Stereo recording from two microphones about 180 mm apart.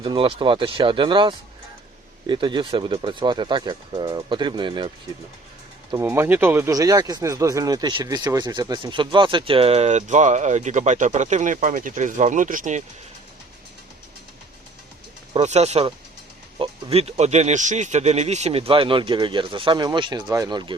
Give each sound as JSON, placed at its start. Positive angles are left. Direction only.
{"t": 0.0, "sound": "speech", "side_deg": -30}
{"t": 6.0, "sound": "speech", "side_deg": -15}
{"t": 15.3, "sound": "speech", "side_deg": -35}